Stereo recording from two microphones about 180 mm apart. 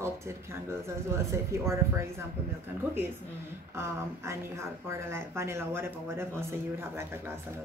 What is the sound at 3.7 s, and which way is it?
A woman's voice, 15° right (ahead or behind).